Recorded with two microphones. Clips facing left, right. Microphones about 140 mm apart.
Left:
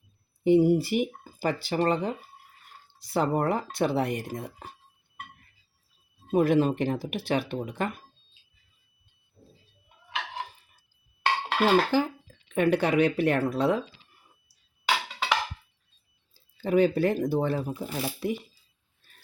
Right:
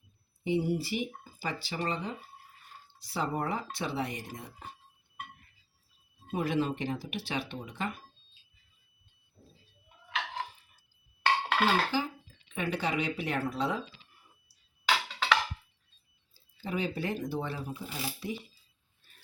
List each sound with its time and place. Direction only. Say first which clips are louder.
0.4 s speech: left 10 dB; 50° left (ahead or behind)
6.3 s speech: left 8 dB; 50° left (ahead or behind)
11.6 s speech: left 9 dB; 60° left (ahead or behind)
14.8 s music: left 1 dB; 10° left (ahead or behind)
16.6 s speech: left 11 dB; 55° left (ahead or behind)